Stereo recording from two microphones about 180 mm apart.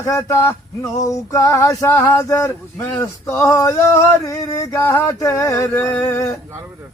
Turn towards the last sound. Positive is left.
turn(degrees=15)  # may be behind; listen again after turning